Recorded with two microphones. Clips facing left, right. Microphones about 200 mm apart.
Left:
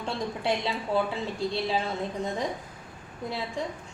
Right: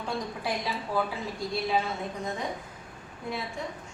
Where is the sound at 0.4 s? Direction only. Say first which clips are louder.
Left 6 dB; 25° left (ahead or behind).